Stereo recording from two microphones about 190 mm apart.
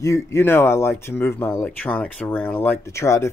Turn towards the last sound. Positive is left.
turn(degrees=15)  # may be behind; listen again after turning